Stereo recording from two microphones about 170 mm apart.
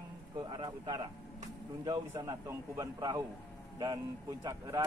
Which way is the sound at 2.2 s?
20° right (ahead or behind).